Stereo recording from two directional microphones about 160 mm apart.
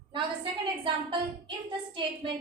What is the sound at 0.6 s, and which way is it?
A woman's voice, 30° right (ahead or behind).